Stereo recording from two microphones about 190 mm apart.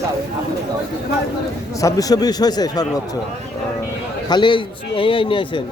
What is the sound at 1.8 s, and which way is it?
A man's voice, 20° left (ahead or behind).